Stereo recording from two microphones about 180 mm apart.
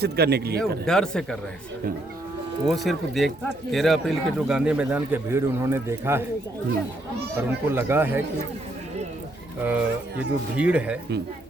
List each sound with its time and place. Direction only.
0.0 s speech: 60° right (ahead or behind)
0.9 s speech: 5° left (ahead or behind)
2.6 s speech: centre (ahead or behind)
7.4 s speech: 10° right (ahead or behind)
9.6 s speech: 10° right (ahead or behind)